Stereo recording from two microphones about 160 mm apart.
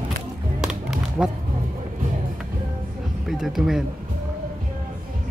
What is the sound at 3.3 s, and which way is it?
Speech, centre (ahead or behind).